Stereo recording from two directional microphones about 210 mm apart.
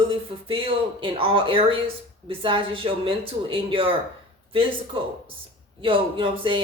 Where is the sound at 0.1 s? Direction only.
25° right (ahead or behind).